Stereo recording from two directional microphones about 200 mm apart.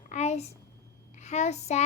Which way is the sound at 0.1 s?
35° left (ahead or behind).